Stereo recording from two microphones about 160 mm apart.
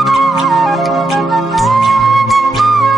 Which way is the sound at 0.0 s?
Centre (ahead or behind).